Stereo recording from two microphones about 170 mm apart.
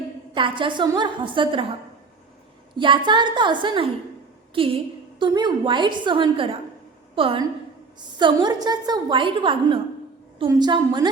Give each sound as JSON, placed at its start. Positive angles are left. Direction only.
{"t": 0.3, "sound": "a woman's voice", "side_deg": -30}
{"t": 2.7, "sound": "a woman's voice", "side_deg": -30}